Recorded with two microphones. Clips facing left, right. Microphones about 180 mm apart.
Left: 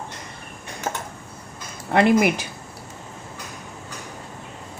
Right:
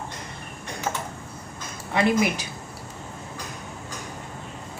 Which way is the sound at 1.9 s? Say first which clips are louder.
Left 5 dB; 60° left (ahead or behind).